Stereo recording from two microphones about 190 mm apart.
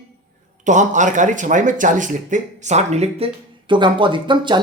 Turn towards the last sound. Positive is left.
turn(degrees=-25)  # may be behind; listen again after turning